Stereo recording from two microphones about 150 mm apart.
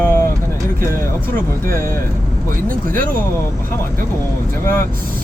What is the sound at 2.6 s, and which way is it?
Speech, 65° right (ahead or behind).